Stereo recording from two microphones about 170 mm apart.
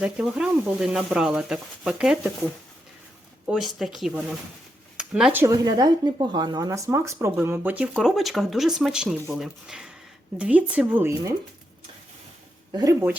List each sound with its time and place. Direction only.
0.0 s speech: 5° right (ahead or behind)
3.4 s speech: 5° right (ahead or behind)
12.7 s speech: 20° right (ahead or behind)